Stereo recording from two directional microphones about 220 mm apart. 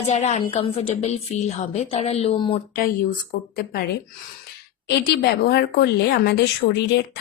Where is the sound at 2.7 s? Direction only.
40° left (ahead or behind).